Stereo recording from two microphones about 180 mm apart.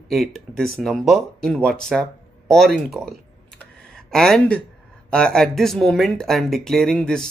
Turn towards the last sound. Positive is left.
turn(degrees=5)  # may be behind; listen again after turning